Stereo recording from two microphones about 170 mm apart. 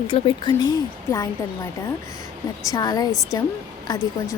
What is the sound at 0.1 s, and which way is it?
Speech, 30° left (ahead or behind).